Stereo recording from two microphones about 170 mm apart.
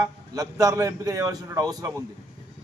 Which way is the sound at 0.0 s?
20° right (ahead or behind).